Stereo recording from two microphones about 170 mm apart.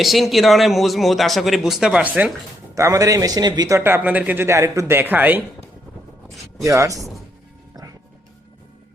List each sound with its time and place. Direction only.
0.0 s a man's voice: centre (ahead or behind); by 3.8 s 25° right (ahead or behind)
3.8 s speech: 10° right (ahead or behind)
6.7 s a man's voice: 20° right (ahead or behind)